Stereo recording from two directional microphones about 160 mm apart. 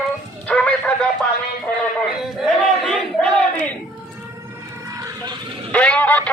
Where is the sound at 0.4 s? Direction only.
10° left (ahead or behind).